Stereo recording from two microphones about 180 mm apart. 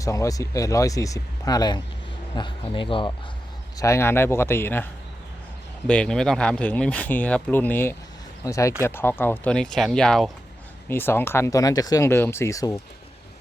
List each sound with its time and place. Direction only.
0.0 s speech: 20° left (ahead or behind)
3.8 s speech: 15° left (ahead or behind)
5.9 s speech: 5° left (ahead or behind)
10.8 s speech: 10° left (ahead or behind)